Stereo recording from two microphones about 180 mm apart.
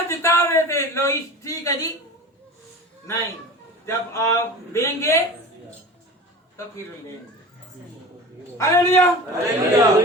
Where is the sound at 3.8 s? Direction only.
15° left (ahead or behind).